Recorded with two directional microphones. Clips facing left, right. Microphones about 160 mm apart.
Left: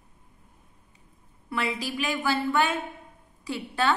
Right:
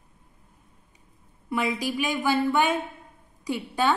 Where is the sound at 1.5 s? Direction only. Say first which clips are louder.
Right 3 dB; 15° right (ahead or behind).